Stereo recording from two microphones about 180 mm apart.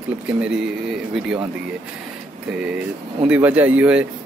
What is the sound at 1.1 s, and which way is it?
Speech, 5° right (ahead or behind).